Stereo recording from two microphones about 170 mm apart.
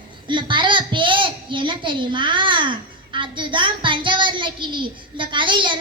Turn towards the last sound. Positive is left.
turn(degrees=-30)  # may be behind; listen again after turning